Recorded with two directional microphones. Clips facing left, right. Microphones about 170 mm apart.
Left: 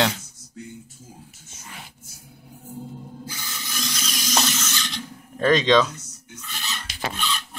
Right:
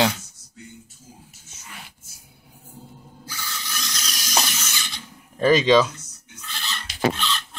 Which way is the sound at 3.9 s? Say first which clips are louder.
Left 1 dB; 5° left (ahead or behind).